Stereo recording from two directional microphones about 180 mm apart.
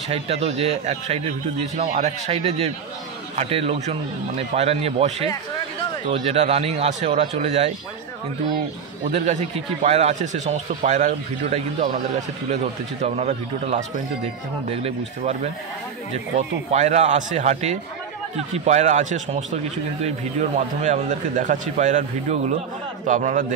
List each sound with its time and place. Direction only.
0.1 s speech: 35° right (ahead or behind)
9.1 s speech: 40° right (ahead or behind)
13.0 s a man's voice: 40° right (ahead or behind)